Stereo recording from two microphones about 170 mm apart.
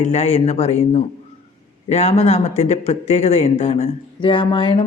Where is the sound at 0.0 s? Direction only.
40° left (ahead or behind).